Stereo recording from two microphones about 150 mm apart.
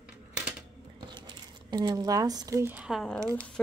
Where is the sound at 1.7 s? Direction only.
30° right (ahead or behind).